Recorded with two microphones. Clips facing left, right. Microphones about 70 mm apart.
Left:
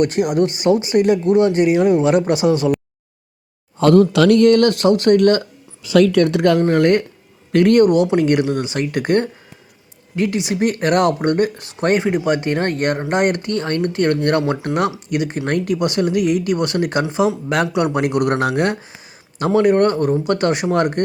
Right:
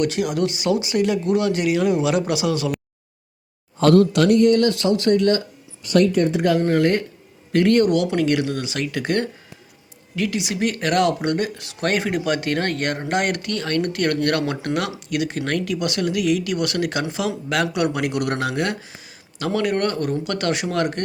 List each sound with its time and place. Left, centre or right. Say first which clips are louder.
0.0 s speech: left 5 dB; left
4.3 s speech: left 4 dB; left
6.1 s speech: left 4 dB; left
6.7 s speech: left 4 dB; left